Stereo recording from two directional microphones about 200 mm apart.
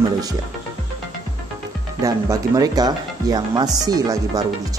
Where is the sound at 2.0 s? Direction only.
15° right (ahead or behind).